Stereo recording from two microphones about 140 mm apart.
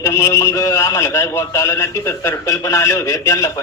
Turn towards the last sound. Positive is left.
turn(degrees=20)  # may be behind; listen again after turning